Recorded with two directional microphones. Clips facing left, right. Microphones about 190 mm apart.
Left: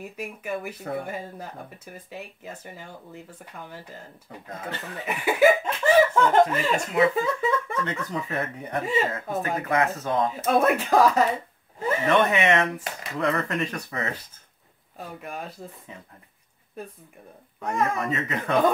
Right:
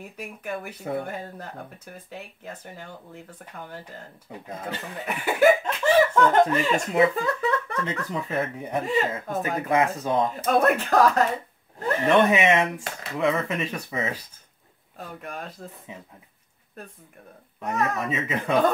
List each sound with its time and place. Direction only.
0.2 s speech: centre (ahead or behind)
4.5 s speech: 10° right (ahead or behind)
4.9 s speech: centre (ahead or behind)
9.4 s speech: 15° right (ahead or behind)
10.3 s speech: centre (ahead or behind)
12.3 s speech: 10° right (ahead or behind)
15.0 s speech: 5° left (ahead or behind)
17.6 s speech: 5° right (ahead or behind)